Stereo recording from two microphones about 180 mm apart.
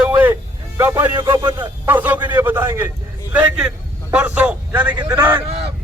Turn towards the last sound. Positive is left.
turn(degrees=-35)  # may be behind; listen again after turning